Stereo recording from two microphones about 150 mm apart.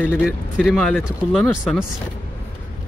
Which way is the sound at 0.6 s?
5° left (ahead or behind).